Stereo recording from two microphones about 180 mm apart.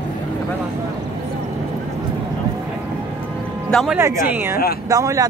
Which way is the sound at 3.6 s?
5° left (ahead or behind).